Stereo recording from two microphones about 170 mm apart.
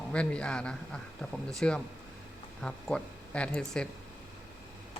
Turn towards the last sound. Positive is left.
turn(degrees=5)  # may be behind; listen again after turning